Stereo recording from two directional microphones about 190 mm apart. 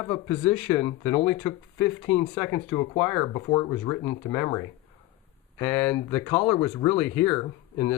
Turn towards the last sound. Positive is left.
turn(degrees=15)  # may be behind; listen again after turning